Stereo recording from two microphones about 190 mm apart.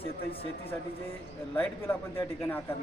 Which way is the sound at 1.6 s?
10° left (ahead or behind).